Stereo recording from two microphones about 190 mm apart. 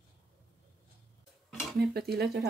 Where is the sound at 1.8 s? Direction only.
55° right (ahead or behind).